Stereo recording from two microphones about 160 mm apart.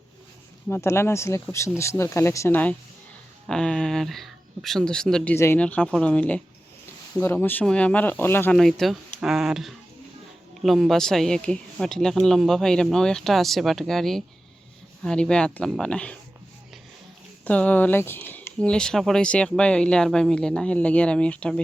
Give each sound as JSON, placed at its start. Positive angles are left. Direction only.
{"t": 0.7, "sound": "speech", "side_deg": 15}
{"t": 8.5, "sound": "speech", "side_deg": 0}
{"t": 17.4, "sound": "speech", "side_deg": 10}